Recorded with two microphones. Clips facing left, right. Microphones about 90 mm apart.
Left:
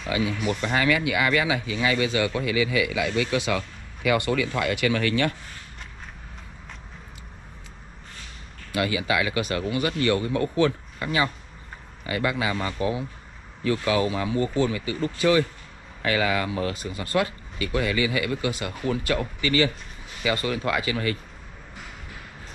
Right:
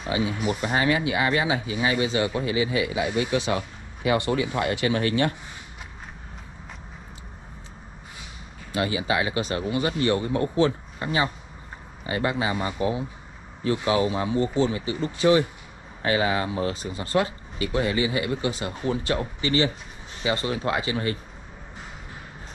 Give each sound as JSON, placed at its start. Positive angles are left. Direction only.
{"t": 0.0, "sound": "speech", "side_deg": -30}
{"t": 0.4, "sound": "speech", "side_deg": -40}
{"t": 0.7, "sound": "speech", "side_deg": -30}
{"t": 8.7, "sound": "speech", "side_deg": -30}
{"t": 12.5, "sound": "speech", "side_deg": -20}